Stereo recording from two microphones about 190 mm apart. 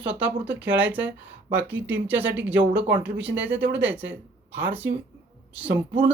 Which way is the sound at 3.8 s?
10° right (ahead or behind).